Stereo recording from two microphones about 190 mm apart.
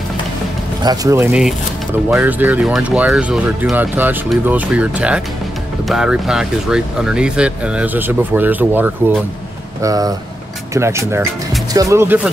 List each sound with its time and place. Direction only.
0.8 s speech: 15° right (ahead or behind)